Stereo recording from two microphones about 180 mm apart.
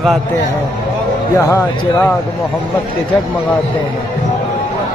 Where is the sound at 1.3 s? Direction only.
15° left (ahead or behind).